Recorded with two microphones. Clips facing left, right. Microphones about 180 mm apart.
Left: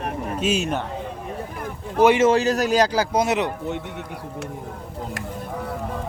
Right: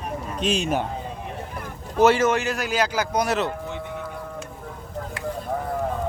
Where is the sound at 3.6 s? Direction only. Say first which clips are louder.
Left 2 dB; 65° left (ahead or behind).